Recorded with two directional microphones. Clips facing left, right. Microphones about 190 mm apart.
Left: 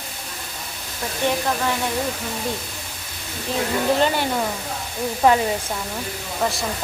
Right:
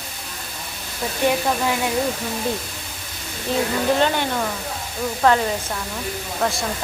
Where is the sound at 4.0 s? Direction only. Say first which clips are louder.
Even; 5° left (ahead or behind).